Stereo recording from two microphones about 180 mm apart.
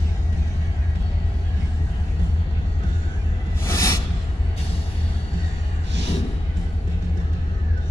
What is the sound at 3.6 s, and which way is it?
Music, 15° left (ahead or behind).